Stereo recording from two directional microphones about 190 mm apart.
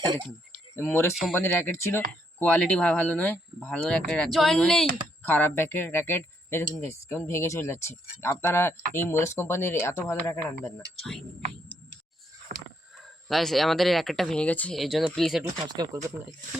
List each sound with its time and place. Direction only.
0.8 s speech: 10° left (ahead or behind)
12.5 s a sound: 50° right (ahead or behind)
13.0 s speech: centre (ahead or behind)
15.4 s speech: 20° right (ahead or behind)